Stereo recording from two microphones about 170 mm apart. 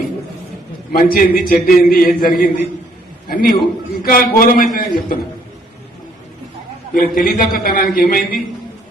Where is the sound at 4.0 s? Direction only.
60° left (ahead or behind).